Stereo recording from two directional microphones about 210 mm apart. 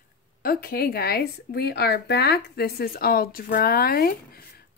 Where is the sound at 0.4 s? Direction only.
45° left (ahead or behind).